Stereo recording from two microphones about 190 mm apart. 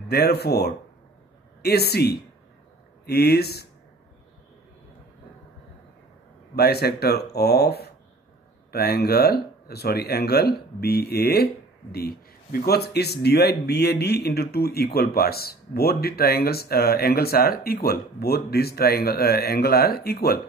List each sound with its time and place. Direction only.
0.1 s speech: 55° left (ahead or behind)
6.5 s speech: 55° left (ahead or behind)